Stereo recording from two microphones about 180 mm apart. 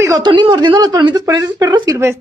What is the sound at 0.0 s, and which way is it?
A woman's voice, 20° right (ahead or behind).